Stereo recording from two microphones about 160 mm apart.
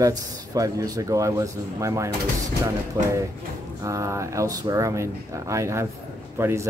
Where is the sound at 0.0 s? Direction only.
20° right (ahead or behind).